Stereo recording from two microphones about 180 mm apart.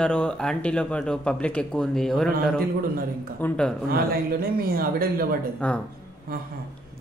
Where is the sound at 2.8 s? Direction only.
55° right (ahead or behind).